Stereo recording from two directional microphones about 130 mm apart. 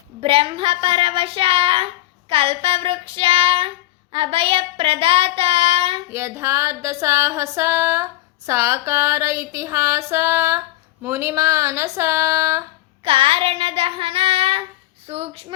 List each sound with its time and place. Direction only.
0.2 s child singing: 45° right (ahead or behind)
6.1 s music: 20° right (ahead or behind)
13.1 s child singing: 45° right (ahead or behind)